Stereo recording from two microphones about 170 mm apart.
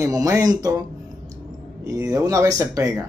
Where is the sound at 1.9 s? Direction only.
20° right (ahead or behind).